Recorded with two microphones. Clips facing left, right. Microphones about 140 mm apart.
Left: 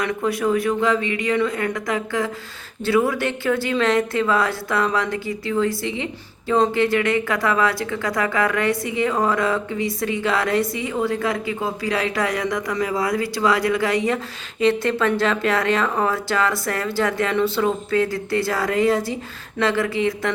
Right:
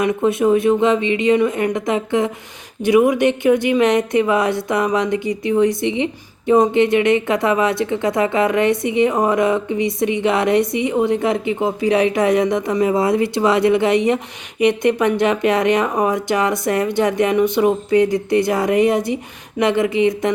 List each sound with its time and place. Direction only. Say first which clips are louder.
0.0 s speech: right 6 dB; 20° right (ahead or behind)